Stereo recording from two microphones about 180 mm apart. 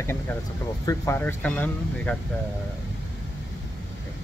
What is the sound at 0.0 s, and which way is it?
Speech, 10° left (ahead or behind).